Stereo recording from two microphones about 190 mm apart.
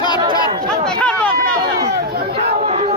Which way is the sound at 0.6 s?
5° left (ahead or behind).